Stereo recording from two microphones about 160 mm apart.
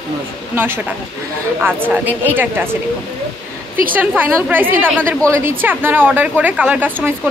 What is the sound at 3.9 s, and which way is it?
Speech, 10° right (ahead or behind).